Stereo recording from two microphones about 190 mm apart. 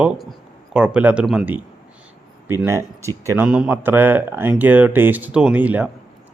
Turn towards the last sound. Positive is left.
turn(degrees=-10)  # may be behind; listen again after turning